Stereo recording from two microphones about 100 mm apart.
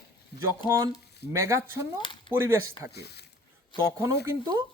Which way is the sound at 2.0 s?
55° left (ahead or behind).